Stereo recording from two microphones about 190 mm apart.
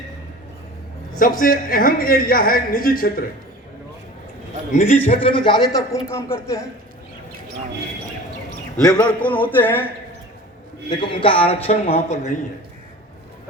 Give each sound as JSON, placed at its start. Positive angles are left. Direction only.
{"t": 1.2, "sound": "speech", "side_deg": 45}
{"t": 4.7, "sound": "a man's voice", "side_deg": 40}
{"t": 5.3, "sound": "a man's voice", "side_deg": 25}
{"t": 9.0, "sound": "speech", "side_deg": 10}
{"t": 10.8, "sound": "a man's voice", "side_deg": 25}